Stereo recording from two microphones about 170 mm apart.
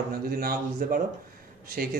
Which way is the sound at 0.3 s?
60° right (ahead or behind).